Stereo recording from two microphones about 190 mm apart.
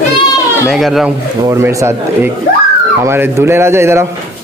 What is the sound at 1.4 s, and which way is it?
Speech, 15° right (ahead or behind).